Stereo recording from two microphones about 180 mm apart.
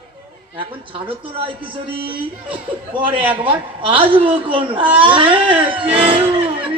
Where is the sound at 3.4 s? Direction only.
30° right (ahead or behind).